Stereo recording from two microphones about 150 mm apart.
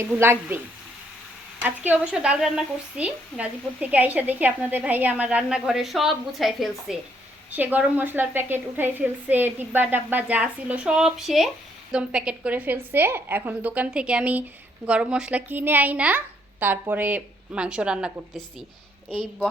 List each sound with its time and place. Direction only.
0.0 s a woman's voice: 15° right (ahead or behind)
1.6 s a woman's voice: 10° right (ahead or behind)